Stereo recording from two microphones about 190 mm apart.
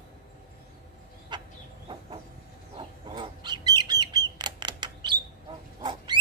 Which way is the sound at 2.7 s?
25° right (ahead or behind).